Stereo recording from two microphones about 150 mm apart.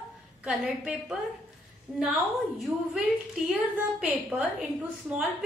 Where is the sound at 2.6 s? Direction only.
5° right (ahead or behind).